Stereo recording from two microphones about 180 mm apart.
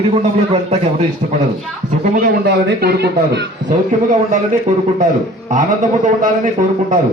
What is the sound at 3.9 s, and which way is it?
Speech, 45° right (ahead or behind).